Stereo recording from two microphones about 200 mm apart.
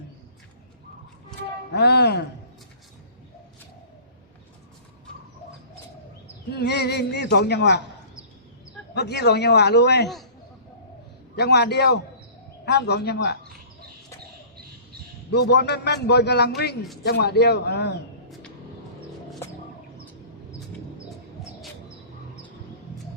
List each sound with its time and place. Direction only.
1.7 s a man's voice: 55° left (ahead or behind)
6.5 s a man's voice: 55° left (ahead or behind)
9.0 s a man's voice: 55° left (ahead or behind)
11.3 s a man's voice: 55° left (ahead or behind)
15.3 s a man's voice: 55° left (ahead or behind)